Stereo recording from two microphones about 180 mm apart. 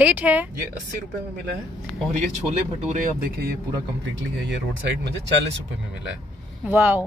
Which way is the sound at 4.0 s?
90° right.